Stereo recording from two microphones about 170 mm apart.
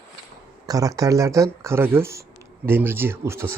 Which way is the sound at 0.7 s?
20° right (ahead or behind).